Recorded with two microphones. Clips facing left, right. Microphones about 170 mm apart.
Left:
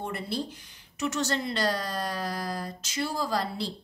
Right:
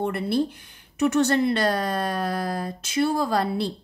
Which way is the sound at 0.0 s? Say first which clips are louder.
Right 9 dB; 60° right (ahead or behind).